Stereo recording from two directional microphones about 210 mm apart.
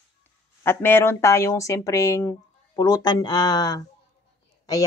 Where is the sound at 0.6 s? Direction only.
10° left (ahead or behind).